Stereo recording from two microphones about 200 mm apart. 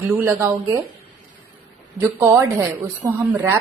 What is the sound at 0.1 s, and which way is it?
Speech, 15° right (ahead or behind).